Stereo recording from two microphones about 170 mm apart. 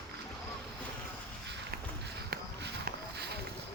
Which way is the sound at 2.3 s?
75° right (ahead or behind).